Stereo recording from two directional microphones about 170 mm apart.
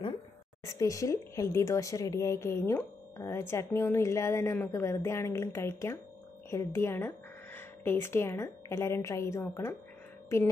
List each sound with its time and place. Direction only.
0.7 s speech: 20° left (ahead or behind)